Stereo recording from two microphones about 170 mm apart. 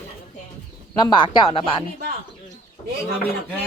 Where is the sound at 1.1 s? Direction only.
30° left (ahead or behind).